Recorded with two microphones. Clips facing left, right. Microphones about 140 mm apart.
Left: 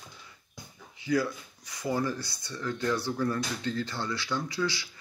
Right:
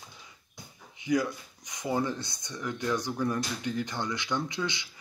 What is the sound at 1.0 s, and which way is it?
Speech, 20° right (ahead or behind).